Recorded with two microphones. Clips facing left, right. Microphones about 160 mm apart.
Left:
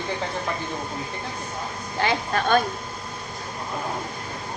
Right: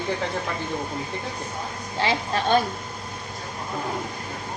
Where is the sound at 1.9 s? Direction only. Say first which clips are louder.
Left 1 dB; 25° right (ahead or behind).